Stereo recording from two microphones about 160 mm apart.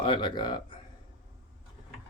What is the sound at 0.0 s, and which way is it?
Speech, 30° left (ahead or behind).